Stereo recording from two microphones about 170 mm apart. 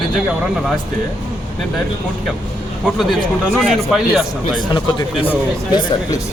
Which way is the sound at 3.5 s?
Centre (ahead or behind).